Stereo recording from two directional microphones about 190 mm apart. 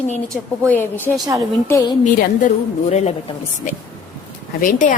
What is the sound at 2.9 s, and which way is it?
A woman's voice, 35° left (ahead or behind).